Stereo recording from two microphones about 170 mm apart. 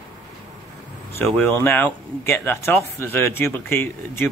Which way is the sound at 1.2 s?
5° left (ahead or behind).